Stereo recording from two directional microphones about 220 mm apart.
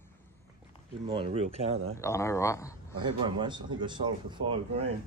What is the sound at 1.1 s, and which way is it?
Speech, 25° right (ahead or behind).